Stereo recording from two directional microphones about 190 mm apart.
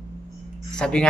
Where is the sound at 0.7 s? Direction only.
5° left (ahead or behind).